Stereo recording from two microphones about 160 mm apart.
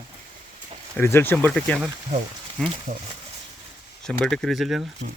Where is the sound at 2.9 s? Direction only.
45° right (ahead or behind).